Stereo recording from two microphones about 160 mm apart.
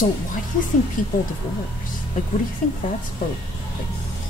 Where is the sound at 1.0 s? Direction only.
55° left (ahead or behind).